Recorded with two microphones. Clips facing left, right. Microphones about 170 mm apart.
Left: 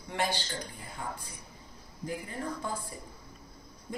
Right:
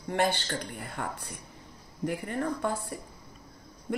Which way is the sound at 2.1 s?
65° right (ahead or behind).